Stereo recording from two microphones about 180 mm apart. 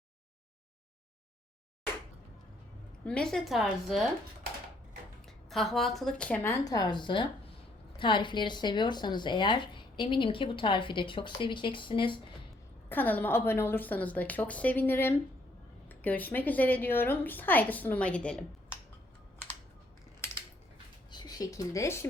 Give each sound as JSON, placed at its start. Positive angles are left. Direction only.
{"t": 3.0, "sound": "a woman's voice", "side_deg": 5}
{"t": 5.5, "sound": "a woman's voice", "side_deg": 0}
{"t": 12.9, "sound": "a woman's voice", "side_deg": 10}
{"t": 21.1, "sound": "speech", "side_deg": 25}